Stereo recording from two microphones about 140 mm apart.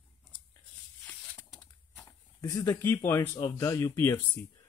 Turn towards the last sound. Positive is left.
turn(degrees=20)  # may be behind; listen again after turning